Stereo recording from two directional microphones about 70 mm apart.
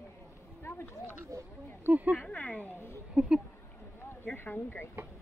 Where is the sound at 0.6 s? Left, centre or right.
Left.